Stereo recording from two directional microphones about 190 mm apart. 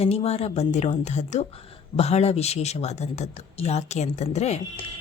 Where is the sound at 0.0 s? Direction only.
30° left (ahead or behind).